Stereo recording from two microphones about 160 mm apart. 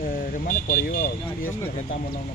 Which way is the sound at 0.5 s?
60° left (ahead or behind).